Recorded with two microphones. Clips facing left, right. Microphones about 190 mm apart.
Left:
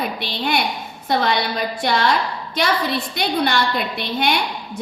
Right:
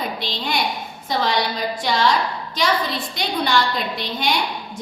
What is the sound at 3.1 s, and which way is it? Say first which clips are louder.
A woman's voice: right 1 dB; 60° left (ahead or behind).